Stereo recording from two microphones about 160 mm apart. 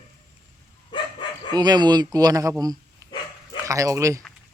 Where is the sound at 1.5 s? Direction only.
25° right (ahead or behind).